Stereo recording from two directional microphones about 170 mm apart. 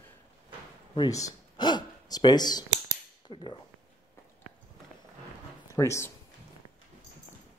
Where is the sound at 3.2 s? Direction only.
30° left (ahead or behind).